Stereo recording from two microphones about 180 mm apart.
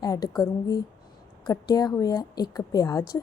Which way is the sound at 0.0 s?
20° left (ahead or behind).